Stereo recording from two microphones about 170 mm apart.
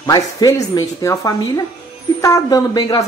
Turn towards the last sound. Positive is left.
turn(degrees=20)  # may be behind; listen again after turning